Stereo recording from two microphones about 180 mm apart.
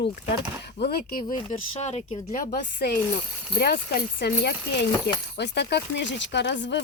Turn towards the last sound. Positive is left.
turn(degrees=75)  # may be behind; listen again after turning